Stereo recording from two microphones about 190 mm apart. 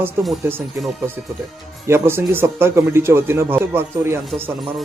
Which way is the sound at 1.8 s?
15° right (ahead or behind).